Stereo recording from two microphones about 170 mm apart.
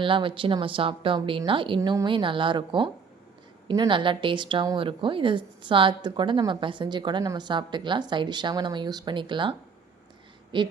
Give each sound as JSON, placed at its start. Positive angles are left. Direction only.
{"t": 0.0, "sound": "a woman's voice", "side_deg": -30}